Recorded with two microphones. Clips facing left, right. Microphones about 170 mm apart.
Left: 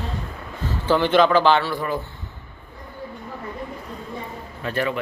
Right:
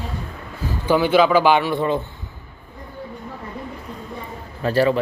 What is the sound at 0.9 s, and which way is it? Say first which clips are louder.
Speech: right 1 dB; 10° right (ahead or behind).